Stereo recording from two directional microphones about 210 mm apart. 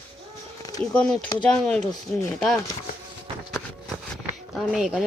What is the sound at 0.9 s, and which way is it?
Speech, 5° left (ahead or behind).